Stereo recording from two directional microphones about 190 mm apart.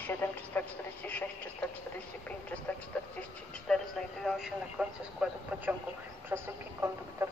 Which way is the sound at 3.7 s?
5° left (ahead or behind).